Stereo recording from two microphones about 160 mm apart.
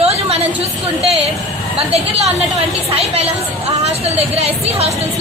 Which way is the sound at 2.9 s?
40° right (ahead or behind).